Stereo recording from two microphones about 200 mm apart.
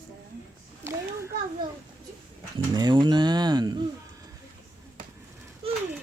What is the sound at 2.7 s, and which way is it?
Speech, 20° right (ahead or behind).